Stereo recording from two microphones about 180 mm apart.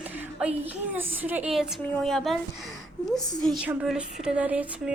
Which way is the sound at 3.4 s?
Centre (ahead or behind).